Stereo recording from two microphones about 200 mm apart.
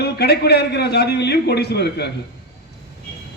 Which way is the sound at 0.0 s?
55° left (ahead or behind).